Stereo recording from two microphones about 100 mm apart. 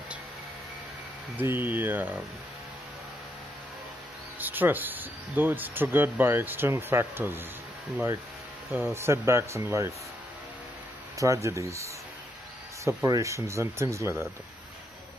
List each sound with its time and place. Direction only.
1.3 s speech: 20° right (ahead or behind)
4.4 s speech: 20° right (ahead or behind)
8.7 s speech: 25° right (ahead or behind)
11.1 s speech: 30° right (ahead or behind)